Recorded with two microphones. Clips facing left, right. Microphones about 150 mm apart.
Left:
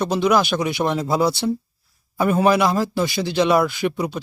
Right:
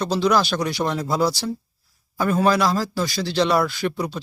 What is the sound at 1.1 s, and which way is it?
Speech, 25° left (ahead or behind).